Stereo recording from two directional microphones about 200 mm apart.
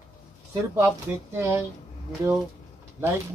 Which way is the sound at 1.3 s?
15° right (ahead or behind).